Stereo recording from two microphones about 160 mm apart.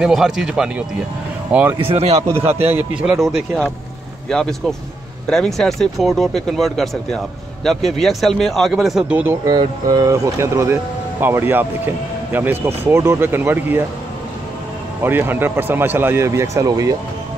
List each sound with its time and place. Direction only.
0.0 s speech: 5° right (ahead or behind)
1.9 s speech: 40° right (ahead or behind)
2.2 s speech: 15° right (ahead or behind)
9.5 s speech: 25° right (ahead or behind)
15.0 s speech: 15° right (ahead or behind)